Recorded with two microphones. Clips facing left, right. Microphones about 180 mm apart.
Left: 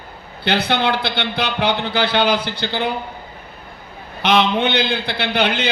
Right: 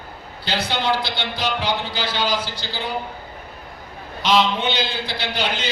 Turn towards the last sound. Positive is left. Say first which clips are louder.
# left 6 dB
turn(degrees=60)  # may be behind; listen again after turning